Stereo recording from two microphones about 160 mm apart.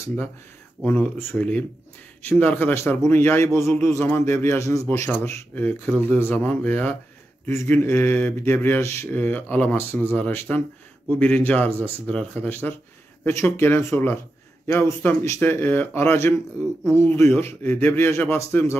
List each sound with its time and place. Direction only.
0.8 s mantra: 10° left (ahead or behind)